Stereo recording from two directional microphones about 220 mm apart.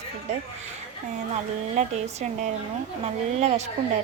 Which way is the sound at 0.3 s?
30° right (ahead or behind).